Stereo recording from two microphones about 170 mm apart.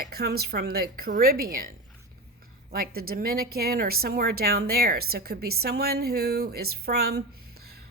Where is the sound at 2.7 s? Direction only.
60° right (ahead or behind).